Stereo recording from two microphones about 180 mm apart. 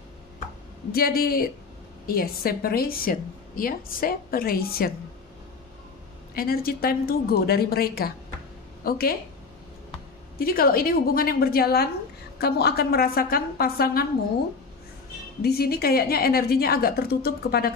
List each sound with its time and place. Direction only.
0.9 s a woman's voice: 55° left (ahead or behind)
6.3 s a woman's voice: 55° left (ahead or behind)
10.4 s a woman's voice: 55° left (ahead or behind)
15.4 s a woman's voice: 60° left (ahead or behind)